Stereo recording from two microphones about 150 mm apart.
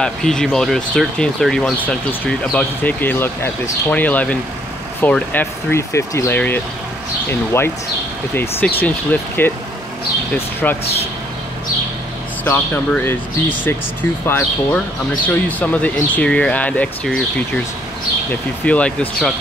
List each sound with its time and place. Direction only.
0.0 s speech: 5° left (ahead or behind)
8.7 s speech: 10° left (ahead or behind)
12.4 s speech: 15° left (ahead or behind)
18.3 s speech: 10° left (ahead or behind)